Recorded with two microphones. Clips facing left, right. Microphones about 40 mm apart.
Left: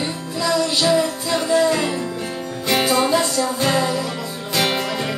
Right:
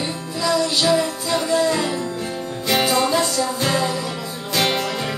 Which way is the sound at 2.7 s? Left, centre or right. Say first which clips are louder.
Left 1 dB; centre.